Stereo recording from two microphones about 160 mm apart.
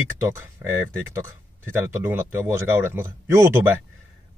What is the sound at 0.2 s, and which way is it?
Speech, 15° right (ahead or behind).